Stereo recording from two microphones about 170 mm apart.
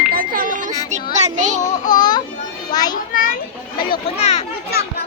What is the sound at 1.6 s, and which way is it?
Speech, 45° left (ahead or behind).